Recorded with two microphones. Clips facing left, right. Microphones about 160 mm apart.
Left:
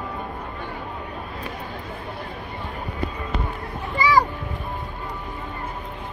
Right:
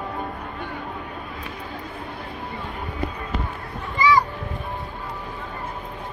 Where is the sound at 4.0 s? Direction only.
30° left (ahead or behind).